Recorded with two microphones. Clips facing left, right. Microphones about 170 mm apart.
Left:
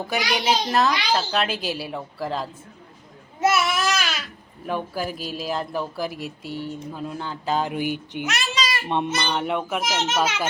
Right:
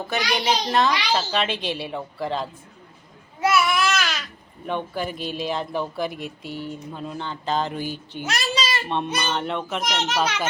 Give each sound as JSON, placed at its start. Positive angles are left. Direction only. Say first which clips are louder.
{"t": 0.1, "sound": "speech", "louder": "even", "side_deg": 5}
{"t": 3.4, "sound": "babbling", "louder": "even", "side_deg": 25}
{"t": 4.6, "sound": "speech", "louder": "even", "side_deg": 5}
{"t": 8.3, "sound": "a sound", "louder": "right 2 dB", "side_deg": -30}
{"t": 9.0, "sound": "speech", "louder": "left 1 dB", "side_deg": -15}
{"t": 9.4, "sound": "a child's voice", "louder": "left 2 dB", "side_deg": 10}